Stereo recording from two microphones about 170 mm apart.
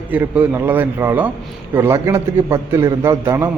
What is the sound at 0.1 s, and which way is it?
A man's voice, 10° right (ahead or behind).